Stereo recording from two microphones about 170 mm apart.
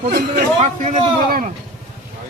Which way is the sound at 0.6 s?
45° right (ahead or behind).